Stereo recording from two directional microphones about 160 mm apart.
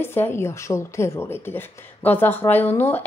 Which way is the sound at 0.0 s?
15° left (ahead or behind).